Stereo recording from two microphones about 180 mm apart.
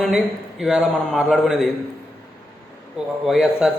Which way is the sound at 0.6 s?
5° right (ahead or behind).